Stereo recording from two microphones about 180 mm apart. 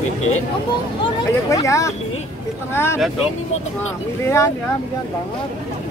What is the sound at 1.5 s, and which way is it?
Speech, 15° left (ahead or behind).